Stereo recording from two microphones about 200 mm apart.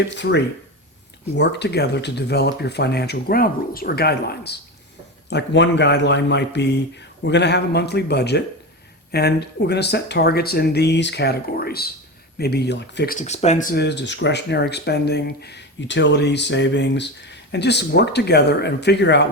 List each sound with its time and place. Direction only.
0.2 s speech: 60° left (ahead or behind)
13.1 s speech: 35° left (ahead or behind); by 19.3 s 60° left (ahead or behind)